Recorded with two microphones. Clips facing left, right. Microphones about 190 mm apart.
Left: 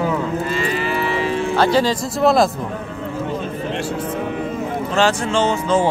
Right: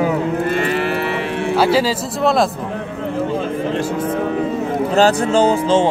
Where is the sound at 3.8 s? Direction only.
90° right.